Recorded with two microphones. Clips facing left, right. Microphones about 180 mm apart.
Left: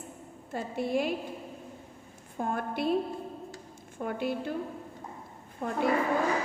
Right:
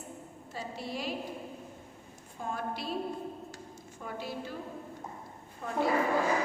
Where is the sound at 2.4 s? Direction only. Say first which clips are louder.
Left 6 dB; 55° left (ahead or behind).